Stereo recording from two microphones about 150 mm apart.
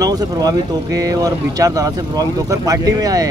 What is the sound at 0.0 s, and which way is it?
Speech, 25° right (ahead or behind).